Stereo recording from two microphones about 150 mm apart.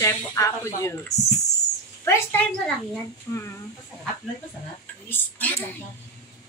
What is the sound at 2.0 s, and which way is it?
A woman's voice, 15° left (ahead or behind).